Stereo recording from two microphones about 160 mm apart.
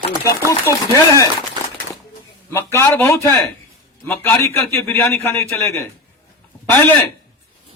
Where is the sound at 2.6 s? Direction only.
15° left (ahead or behind).